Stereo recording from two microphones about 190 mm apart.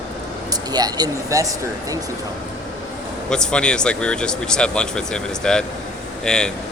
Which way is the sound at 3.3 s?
5° left (ahead or behind).